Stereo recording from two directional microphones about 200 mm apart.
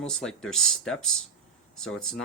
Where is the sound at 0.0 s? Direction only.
5° left (ahead or behind).